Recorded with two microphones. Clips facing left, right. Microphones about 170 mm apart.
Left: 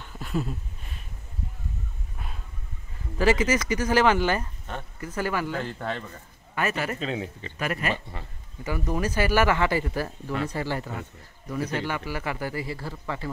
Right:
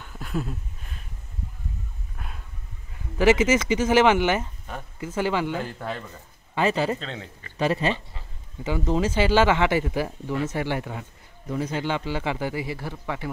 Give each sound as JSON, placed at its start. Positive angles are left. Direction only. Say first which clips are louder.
{"t": 0.0, "sound": "a sound", "louder": "even", "side_deg": 0}
{"t": 3.2, "sound": "speech", "louder": "right 3 dB", "side_deg": -20}
{"t": 5.6, "sound": "speech", "louder": "even", "side_deg": -5}
{"t": 6.5, "sound": "speech", "louder": "right 5 dB", "side_deg": -30}
{"t": 7.0, "sound": "speech", "louder": "left 6 dB", "side_deg": 5}
{"t": 7.5, "sound": "speech", "louder": "right 6 dB", "side_deg": -25}
{"t": 8.1, "sound": "speech", "louder": "left 6 dB", "side_deg": 60}
{"t": 8.6, "sound": "speech", "louder": "right 4 dB", "side_deg": -20}